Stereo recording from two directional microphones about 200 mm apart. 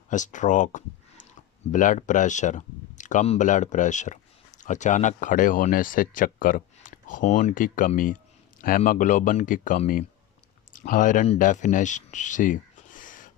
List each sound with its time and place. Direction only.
0.1 s speech: 40° left (ahead or behind)